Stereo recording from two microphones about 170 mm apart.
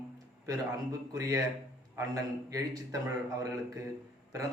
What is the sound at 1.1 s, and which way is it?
Speech, 20° right (ahead or behind).